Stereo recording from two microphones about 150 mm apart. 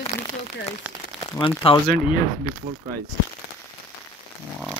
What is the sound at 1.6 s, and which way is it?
Speech, 40° left (ahead or behind).